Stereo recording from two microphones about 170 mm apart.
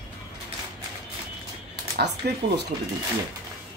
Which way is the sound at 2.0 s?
80° right.